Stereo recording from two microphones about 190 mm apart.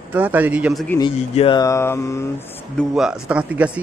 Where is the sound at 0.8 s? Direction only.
20° left (ahead or behind).